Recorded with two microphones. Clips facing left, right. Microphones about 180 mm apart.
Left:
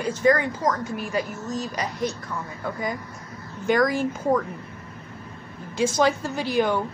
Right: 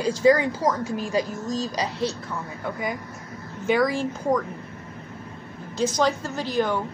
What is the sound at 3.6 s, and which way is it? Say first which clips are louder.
Speech: left 1 dB; 5° right (ahead or behind).